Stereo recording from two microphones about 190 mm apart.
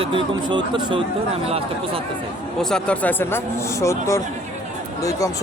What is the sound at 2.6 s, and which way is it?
Speech, 5° left (ahead or behind).